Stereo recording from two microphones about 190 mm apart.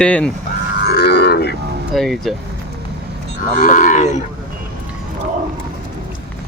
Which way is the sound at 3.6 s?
40° left (ahead or behind).